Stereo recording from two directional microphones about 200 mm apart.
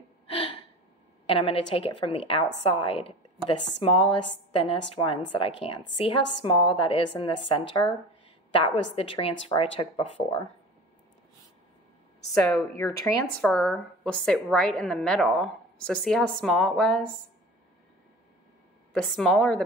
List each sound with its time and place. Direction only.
1.2 s a woman's voice: 30° left (ahead or behind)
8.9 s a woman's voice: 30° left (ahead or behind)
12.4 s speech: 15° left (ahead or behind)
18.9 s speech: centre (ahead or behind)